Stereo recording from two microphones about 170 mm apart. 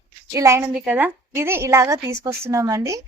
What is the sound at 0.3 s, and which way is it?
A woman's voice, 15° right (ahead or behind).